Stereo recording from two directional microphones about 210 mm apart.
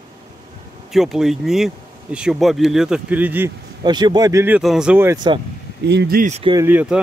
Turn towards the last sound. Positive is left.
turn(degrees=-5)  # may be behind; listen again after turning